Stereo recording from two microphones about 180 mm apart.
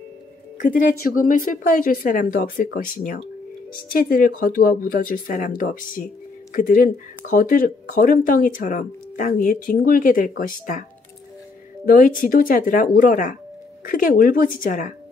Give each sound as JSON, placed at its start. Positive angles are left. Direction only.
{"t": 0.6, "sound": "speech", "side_deg": 45}